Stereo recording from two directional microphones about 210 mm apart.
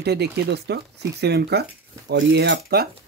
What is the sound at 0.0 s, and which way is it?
Speech, 50° right (ahead or behind).